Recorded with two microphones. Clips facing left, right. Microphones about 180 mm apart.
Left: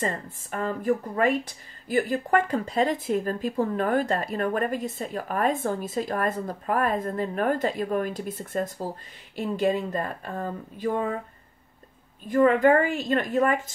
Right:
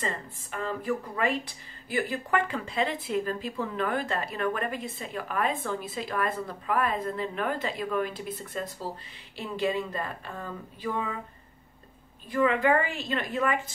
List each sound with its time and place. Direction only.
0.0 s speech: 45° left (ahead or behind)
12.3 s speech: 45° left (ahead or behind)